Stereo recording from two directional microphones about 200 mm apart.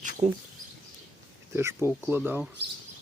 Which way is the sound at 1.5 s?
15° right (ahead or behind).